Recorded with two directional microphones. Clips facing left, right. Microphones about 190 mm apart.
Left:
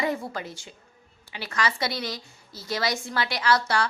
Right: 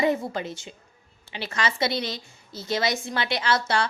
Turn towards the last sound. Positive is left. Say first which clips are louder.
# even
turn(degrees=-25)  # may be behind; listen again after turning